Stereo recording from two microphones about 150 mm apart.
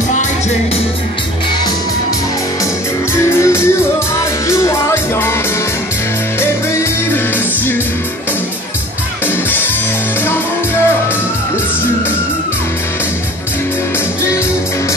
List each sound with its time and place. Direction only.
3.2 s music: 20° left (ahead or behind)
6.4 s music: 15° left (ahead or behind)